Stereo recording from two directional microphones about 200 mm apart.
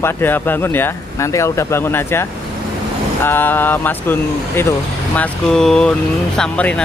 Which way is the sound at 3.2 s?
10° left (ahead or behind).